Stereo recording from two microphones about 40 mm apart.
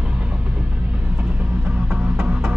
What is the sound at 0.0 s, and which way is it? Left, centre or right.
Music, right.